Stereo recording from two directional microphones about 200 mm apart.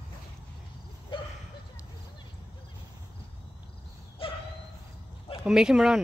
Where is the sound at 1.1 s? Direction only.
25° left (ahead or behind).